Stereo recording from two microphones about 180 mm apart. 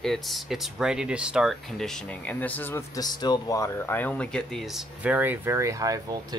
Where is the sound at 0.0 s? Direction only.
Centre (ahead or behind).